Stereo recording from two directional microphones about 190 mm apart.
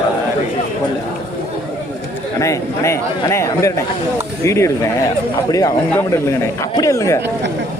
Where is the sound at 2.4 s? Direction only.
15° left (ahead or behind).